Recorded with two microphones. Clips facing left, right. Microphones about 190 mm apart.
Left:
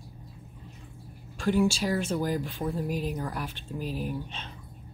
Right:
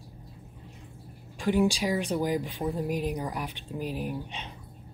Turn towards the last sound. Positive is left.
turn(degrees=-15)  # may be behind; listen again after turning